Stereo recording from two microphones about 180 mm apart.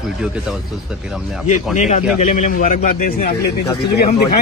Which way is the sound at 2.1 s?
45° left (ahead or behind).